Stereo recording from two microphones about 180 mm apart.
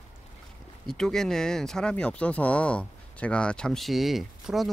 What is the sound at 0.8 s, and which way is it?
Speech, centre (ahead or behind).